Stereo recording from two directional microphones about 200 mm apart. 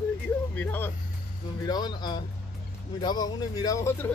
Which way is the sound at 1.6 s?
20° left (ahead or behind).